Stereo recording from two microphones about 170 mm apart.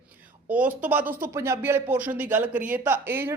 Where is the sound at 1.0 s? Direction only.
55° right (ahead or behind).